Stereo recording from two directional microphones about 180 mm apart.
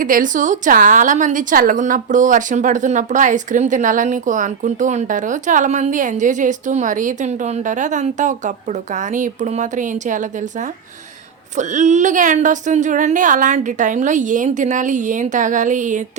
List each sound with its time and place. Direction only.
0.0 s a woman's voice: 50° right (ahead or behind)